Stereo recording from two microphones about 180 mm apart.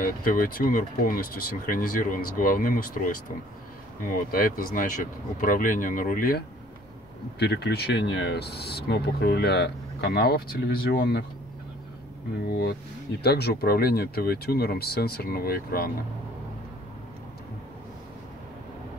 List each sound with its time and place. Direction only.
0.0 s speech: 50° left (ahead or behind)
4.3 s speech: 50° left (ahead or behind)
7.3 s speech: 65° left (ahead or behind)
12.4 s speech: 60° left (ahead or behind)